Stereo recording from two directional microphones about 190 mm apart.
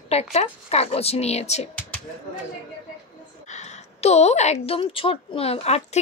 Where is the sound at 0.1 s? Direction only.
35° left (ahead or behind).